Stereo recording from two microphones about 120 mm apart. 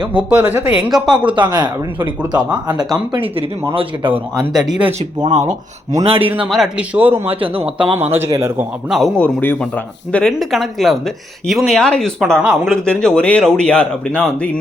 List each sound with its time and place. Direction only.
0.1 s a man's voice: 10° right (ahead or behind)
1.0 s speech: 40° right (ahead or behind)
4.9 s speech: 70° right (ahead or behind)
6.0 s a man's voice: 50° right (ahead or behind)
6.5 s a man's voice: 5° right (ahead or behind)
7.3 s a man's voice: 50° right (ahead or behind)
7.9 s speech: 20° right (ahead or behind)
8.9 s speech: centre (ahead or behind)
12.7 s speech: 5° left (ahead or behind)